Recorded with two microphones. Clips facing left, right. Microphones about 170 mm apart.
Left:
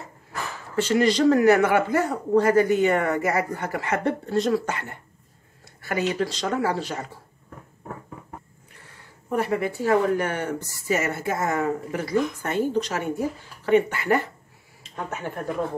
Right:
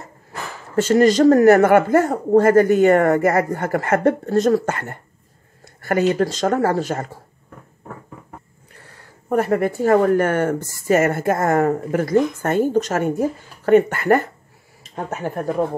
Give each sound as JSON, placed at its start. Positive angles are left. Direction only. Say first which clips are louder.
{"t": 0.7, "sound": "speech", "louder": "right 6 dB", "side_deg": -45}
{"t": 9.3, "sound": "speech", "louder": "right 6 dB", "side_deg": -50}